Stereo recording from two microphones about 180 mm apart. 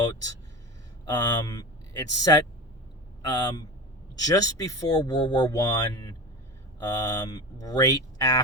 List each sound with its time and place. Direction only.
1.0 s speech: 20° left (ahead or behind)